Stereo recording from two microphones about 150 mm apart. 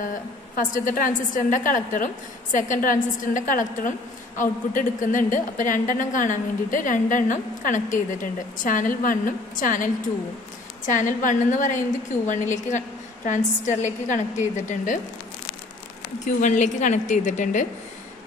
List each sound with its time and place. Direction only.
0.0 s a woman's voice: 60° left (ahead or behind)
10.9 s a woman's voice: 60° left (ahead or behind)
16.3 s a woman's voice: 55° left (ahead or behind)